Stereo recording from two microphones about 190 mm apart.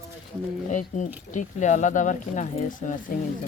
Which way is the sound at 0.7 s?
40° left (ahead or behind).